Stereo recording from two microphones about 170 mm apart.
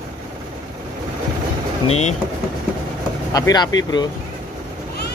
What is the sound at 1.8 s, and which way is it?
Speech, 40° left (ahead or behind).